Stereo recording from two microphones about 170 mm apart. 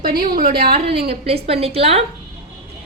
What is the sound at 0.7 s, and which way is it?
A woman's voice, 35° right (ahead or behind).